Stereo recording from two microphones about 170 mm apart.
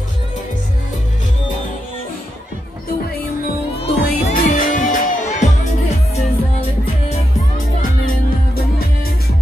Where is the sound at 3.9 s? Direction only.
65° left (ahead or behind); by 5.1 s 50° left (ahead or behind).